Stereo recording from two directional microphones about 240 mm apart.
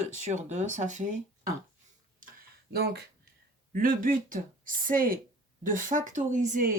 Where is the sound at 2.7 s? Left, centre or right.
Right.